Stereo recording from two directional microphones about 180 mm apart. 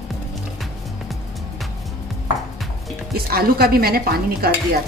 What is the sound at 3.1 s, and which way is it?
Stir, 60° right (ahead or behind).